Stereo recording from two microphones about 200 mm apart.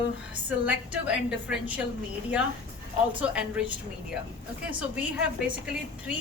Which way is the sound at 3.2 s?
5° right (ahead or behind).